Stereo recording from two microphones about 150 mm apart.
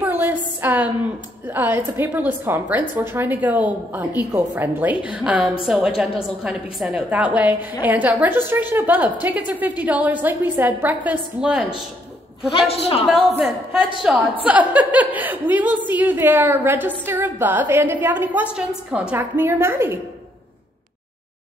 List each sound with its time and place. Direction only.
0.0 s a sound: 15° right (ahead or behind)
1.5 s a woman's voice: 15° right (ahead or behind)
12.4 s a man's voice: 40° left (ahead or behind)
13.4 s a woman's voice: 5° right (ahead or behind)